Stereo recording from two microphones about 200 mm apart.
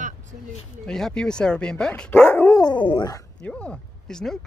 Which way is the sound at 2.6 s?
25° left (ahead or behind).